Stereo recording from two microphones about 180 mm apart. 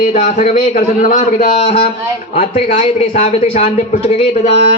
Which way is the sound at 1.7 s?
30° left (ahead or behind).